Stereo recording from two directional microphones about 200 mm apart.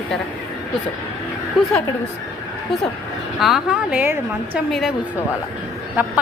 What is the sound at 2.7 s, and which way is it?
A woman's voice, centre (ahead or behind).